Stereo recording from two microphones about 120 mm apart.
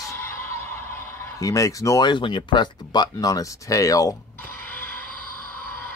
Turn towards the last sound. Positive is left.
turn(degrees=15)  # may be behind; listen again after turning